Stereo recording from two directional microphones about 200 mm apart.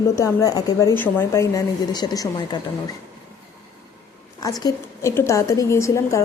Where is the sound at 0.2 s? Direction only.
15° left (ahead or behind).